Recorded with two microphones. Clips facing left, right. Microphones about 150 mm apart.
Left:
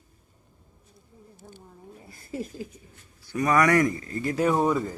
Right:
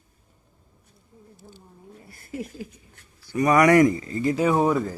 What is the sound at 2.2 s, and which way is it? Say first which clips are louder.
Speech: even; 30° left (ahead or behind).